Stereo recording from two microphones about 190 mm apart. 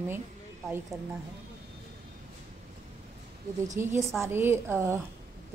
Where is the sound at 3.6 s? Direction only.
15° right (ahead or behind).